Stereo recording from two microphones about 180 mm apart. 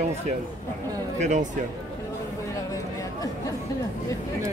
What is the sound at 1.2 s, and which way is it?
Speech, 45° right (ahead or behind).